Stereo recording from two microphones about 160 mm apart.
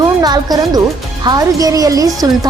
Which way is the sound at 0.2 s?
25° right (ahead or behind).